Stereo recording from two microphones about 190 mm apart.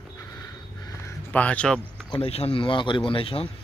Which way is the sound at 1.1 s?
5° left (ahead or behind).